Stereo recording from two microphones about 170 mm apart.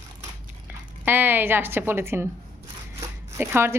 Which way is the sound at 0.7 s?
10° right (ahead or behind).